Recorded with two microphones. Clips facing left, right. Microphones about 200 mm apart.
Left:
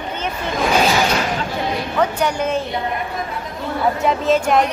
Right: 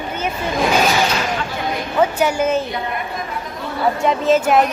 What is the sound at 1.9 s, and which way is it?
Speech, 5° right (ahead or behind).